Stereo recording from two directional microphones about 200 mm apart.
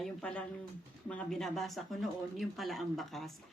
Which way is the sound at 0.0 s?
5° left (ahead or behind).